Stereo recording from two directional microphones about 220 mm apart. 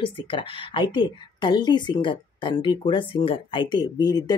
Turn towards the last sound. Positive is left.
turn(degrees=20)  # may be behind; listen again after turning